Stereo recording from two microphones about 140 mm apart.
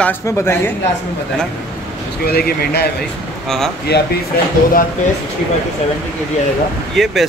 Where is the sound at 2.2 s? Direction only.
90° left.